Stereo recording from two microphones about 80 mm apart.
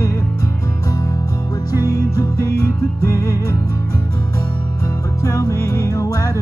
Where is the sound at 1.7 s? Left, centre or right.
Left.